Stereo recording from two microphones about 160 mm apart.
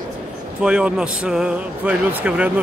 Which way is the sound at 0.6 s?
5° right (ahead or behind).